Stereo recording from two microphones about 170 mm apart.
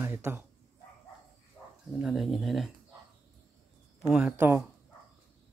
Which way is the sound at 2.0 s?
Centre (ahead or behind).